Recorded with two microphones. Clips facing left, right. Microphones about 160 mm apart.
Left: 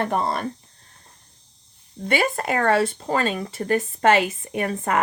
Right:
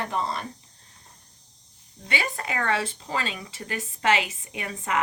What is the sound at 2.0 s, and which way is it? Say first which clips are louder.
Speech: left 8 dB; 50° left (ahead or behind).